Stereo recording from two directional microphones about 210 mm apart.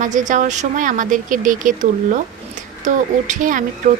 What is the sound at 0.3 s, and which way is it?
A woman's voice, 35° right (ahead or behind).